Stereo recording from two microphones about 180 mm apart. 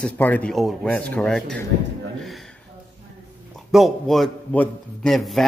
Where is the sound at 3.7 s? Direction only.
Centre (ahead or behind).